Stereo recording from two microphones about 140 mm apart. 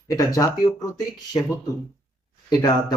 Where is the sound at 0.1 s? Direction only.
25° left (ahead or behind).